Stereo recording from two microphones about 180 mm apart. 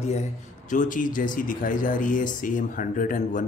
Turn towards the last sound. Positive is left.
turn(degrees=50)  # may be behind; listen again after turning